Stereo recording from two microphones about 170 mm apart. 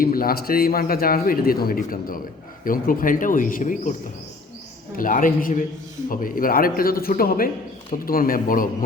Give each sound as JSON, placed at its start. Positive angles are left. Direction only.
{"t": 0.0, "sound": "a man's voice", "side_deg": 60}
{"t": 4.9, "sound": "a man's voice", "side_deg": 55}